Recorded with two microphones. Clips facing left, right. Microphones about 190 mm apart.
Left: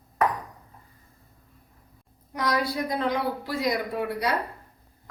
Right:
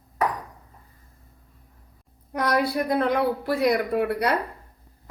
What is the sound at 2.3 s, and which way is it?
A woman's voice, 60° right (ahead or behind).